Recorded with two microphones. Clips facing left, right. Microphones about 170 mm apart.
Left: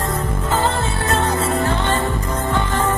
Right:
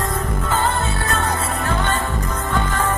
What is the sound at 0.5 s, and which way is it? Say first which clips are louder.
Music: left 1 dB; 30° left (ahead or behind).